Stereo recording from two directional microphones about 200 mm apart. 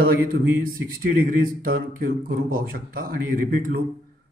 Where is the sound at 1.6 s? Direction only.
45° right (ahead or behind).